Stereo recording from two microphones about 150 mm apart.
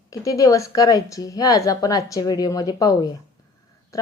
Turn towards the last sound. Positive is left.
turn(degrees=25)  # may be behind; listen again after turning